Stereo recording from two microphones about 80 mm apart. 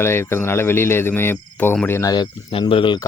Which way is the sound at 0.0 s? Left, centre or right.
Left.